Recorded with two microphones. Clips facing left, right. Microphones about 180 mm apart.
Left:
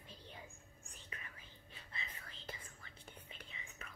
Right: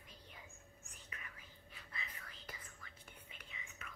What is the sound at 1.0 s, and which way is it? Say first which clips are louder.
Whispering: left 1 dB; 30° left (ahead or behind).